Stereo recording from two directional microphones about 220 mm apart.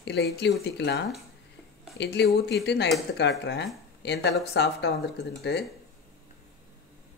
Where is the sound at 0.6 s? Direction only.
50° left (ahead or behind).